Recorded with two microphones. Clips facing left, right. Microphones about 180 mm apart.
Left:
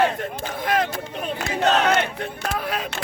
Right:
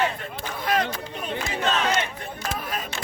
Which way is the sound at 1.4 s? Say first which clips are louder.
Left 5 dB; 70° left (ahead or behind).